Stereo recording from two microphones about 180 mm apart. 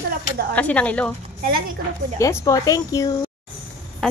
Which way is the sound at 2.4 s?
20° left (ahead or behind).